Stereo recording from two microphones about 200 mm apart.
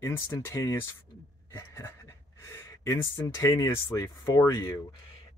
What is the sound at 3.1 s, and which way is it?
Speech, 15° left (ahead or behind).